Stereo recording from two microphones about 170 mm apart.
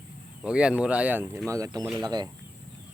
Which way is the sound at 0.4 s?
5° right (ahead or behind).